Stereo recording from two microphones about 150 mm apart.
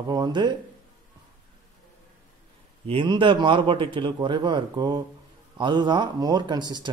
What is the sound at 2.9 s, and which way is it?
Speech, 35° right (ahead or behind).